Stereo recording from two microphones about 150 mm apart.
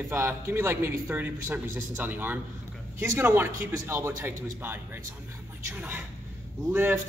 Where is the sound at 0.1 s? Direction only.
15° right (ahead or behind).